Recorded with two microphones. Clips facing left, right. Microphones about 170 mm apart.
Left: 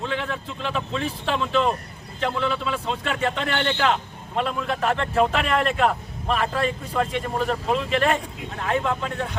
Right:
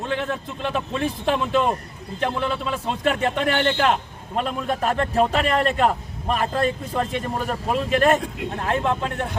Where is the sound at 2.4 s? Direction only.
45° right (ahead or behind).